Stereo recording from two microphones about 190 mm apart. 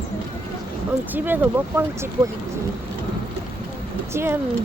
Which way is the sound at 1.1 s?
10° right (ahead or behind).